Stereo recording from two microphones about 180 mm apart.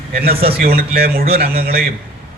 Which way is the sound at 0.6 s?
55° right (ahead or behind).